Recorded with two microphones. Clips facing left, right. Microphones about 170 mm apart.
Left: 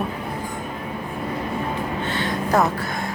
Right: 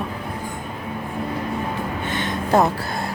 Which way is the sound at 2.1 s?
20° right (ahead or behind).